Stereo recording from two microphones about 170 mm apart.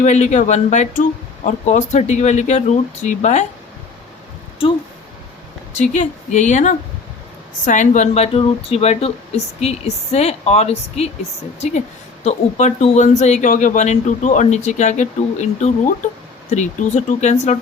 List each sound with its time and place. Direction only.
0.0 s speech: 45° left (ahead or behind)
5.7 s speech: 45° left (ahead or behind)
12.2 s speech: 40° left (ahead or behind)